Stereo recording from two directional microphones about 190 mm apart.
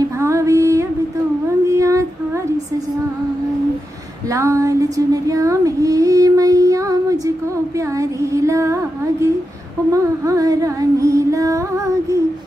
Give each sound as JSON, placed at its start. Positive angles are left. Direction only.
{"t": 0.2, "sound": "a sound", "side_deg": -15}
{"t": 1.7, "sound": "child singing", "side_deg": -15}
{"t": 4.3, "sound": "female singing", "side_deg": -15}
{"t": 9.9, "sound": "music", "side_deg": -15}